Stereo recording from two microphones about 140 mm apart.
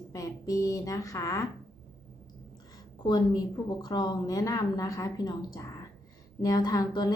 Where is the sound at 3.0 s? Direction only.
30° left (ahead or behind).